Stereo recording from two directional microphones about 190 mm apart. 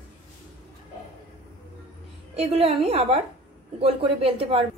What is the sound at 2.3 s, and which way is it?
A woman's voice, 35° right (ahead or behind).